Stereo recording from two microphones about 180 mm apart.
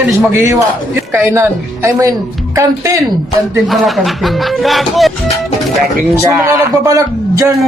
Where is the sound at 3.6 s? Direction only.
Centre (ahead or behind).